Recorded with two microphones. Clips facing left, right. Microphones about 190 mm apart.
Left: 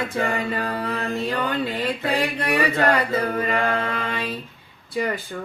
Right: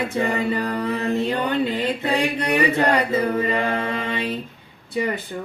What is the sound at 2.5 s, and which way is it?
Chant, 20° right (ahead or behind).